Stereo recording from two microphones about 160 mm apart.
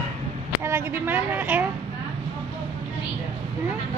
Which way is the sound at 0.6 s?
15° right (ahead or behind).